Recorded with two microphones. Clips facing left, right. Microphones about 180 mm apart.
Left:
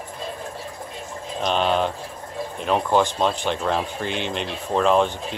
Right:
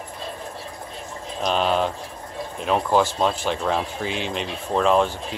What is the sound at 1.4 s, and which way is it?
Speech, centre (ahead or behind).